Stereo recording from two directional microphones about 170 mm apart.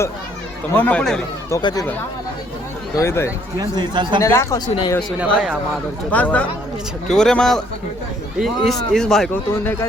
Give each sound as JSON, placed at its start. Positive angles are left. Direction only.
{"t": 0.7, "sound": "speech", "side_deg": 10}
{"t": 1.5, "sound": "speech", "side_deg": 20}
{"t": 3.6, "sound": "speech", "side_deg": -25}
{"t": 4.2, "sound": "speech", "side_deg": 15}
{"t": 5.2, "sound": "speech", "side_deg": -5}
{"t": 6.1, "sound": "speech", "side_deg": 10}